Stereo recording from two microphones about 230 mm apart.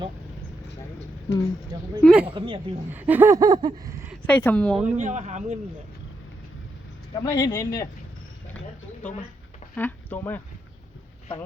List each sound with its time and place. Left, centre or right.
2.0 s speech: centre
2.2 s a woman's voice: right
2.9 s a sound: centre
4.3 s speech: centre
4.9 s speech: right
7.2 s speech: centre
9.7 s speech: centre